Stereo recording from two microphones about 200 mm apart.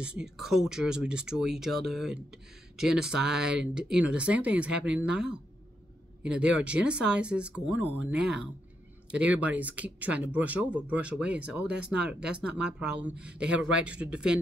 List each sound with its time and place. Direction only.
0.0 s speech: 5° right (ahead or behind)
11.6 s speech: 55° right (ahead or behind)
11.9 s speech: 5° right (ahead or behind)